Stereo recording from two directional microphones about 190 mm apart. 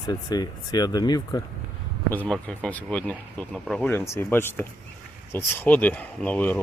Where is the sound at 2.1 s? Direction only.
5° left (ahead or behind).